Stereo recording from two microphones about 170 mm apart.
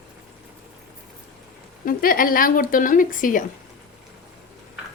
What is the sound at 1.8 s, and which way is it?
Speech, 55° left (ahead or behind).